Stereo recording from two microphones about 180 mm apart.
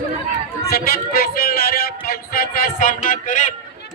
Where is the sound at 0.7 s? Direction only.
55° left (ahead or behind).